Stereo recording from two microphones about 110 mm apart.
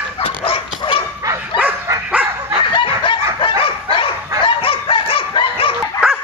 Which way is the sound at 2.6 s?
45° left (ahead or behind).